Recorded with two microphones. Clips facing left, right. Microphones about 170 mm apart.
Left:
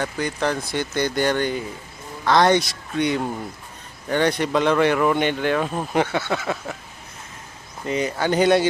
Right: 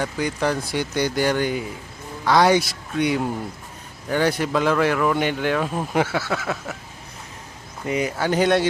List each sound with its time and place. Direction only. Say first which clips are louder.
0.0 s speech: right 1 dB; 10° right (ahead or behind)
7.9 s speech: even; 10° right (ahead or behind)